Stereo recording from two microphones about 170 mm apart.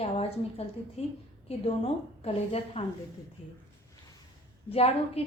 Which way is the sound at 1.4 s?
35° left (ahead or behind).